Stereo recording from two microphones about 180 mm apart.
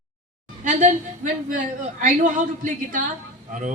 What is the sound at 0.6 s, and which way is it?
A woman's voice, 45° right (ahead or behind).